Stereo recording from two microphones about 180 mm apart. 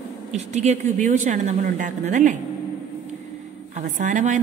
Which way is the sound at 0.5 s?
40° right (ahead or behind).